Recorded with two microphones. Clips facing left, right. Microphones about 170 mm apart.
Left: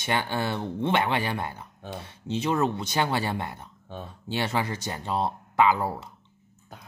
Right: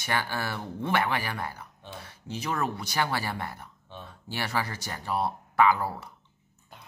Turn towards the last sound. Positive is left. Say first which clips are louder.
# left 1 dB
turn(degrees=20)  # may be behind; listen again after turning